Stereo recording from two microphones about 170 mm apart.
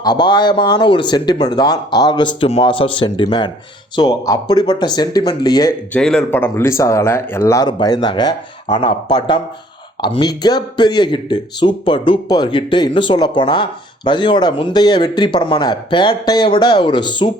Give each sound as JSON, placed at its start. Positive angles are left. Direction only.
{"t": 0.0, "sound": "speech", "side_deg": 25}
{"t": 5.9, "sound": "speech", "side_deg": 5}